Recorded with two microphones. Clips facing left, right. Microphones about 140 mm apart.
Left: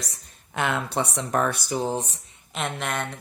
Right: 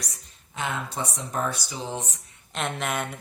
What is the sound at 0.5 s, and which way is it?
Speech, 70° left (ahead or behind).